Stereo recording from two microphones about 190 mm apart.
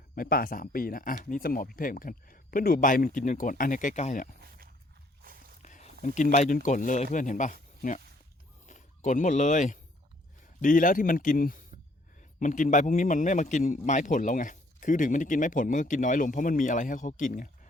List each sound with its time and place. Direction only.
0.2 s a man's voice: 50° left (ahead or behind)
4.4 s a sound: 50° right (ahead or behind)
5.6 s a man's voice: 40° left (ahead or behind)